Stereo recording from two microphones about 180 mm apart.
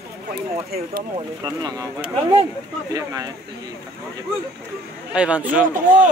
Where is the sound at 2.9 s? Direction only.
20° right (ahead or behind).